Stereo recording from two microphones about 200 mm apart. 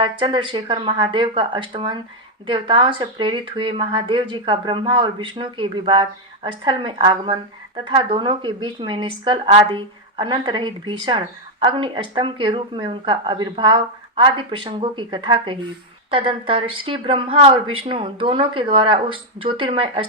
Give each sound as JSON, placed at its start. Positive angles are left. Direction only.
{"t": 0.0, "sound": "speech", "side_deg": -25}